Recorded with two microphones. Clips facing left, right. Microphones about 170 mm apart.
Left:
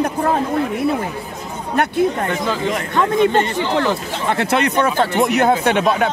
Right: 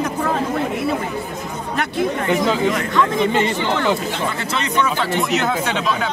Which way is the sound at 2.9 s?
50° left (ahead or behind).